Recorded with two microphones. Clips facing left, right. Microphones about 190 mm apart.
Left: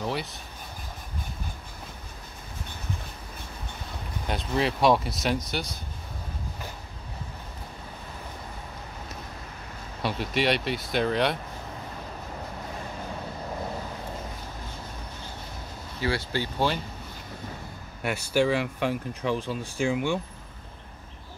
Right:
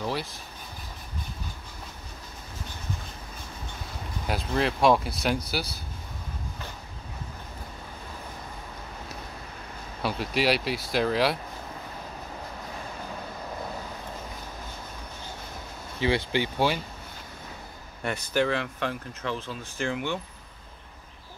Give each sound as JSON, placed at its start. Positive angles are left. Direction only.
{"t": 0.0, "sound": "vehicle", "side_deg": 0}
{"t": 4.3, "sound": "speech", "side_deg": 0}
{"t": 10.0, "sound": "speech", "side_deg": 0}
{"t": 16.0, "sound": "speech", "side_deg": -20}
{"t": 18.0, "sound": "speech", "side_deg": 10}